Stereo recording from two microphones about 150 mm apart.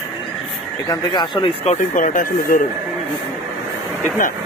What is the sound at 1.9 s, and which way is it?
Speech, 60° left (ahead or behind).